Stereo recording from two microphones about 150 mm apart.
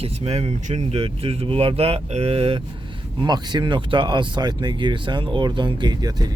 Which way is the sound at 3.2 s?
30° right (ahead or behind).